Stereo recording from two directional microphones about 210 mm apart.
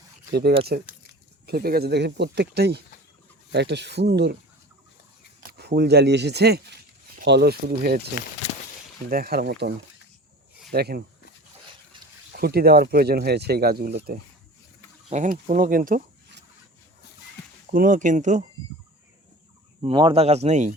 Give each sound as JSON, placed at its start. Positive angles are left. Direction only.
{"t": 0.3, "sound": "speech", "side_deg": -50}
{"t": 5.5, "sound": "speech", "side_deg": -50}
{"t": 9.0, "sound": "speech", "side_deg": -45}
{"t": 11.9, "sound": "a sound", "side_deg": -20}
{"t": 12.3, "sound": "speech", "side_deg": -50}
{"t": 17.7, "sound": "speech", "side_deg": -40}
{"t": 19.8, "sound": "speech", "side_deg": -25}